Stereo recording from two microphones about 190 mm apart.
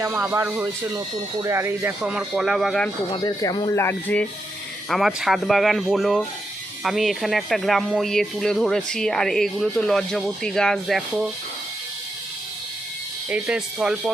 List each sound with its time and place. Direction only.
0.0 s speech: 10° right (ahead or behind)
3.1 s speech: 25° left (ahead or behind)
4.9 s speech: centre (ahead or behind)
13.3 s speech: 5° right (ahead or behind)